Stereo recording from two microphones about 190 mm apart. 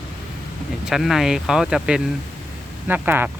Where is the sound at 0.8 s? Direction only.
Centre (ahead or behind).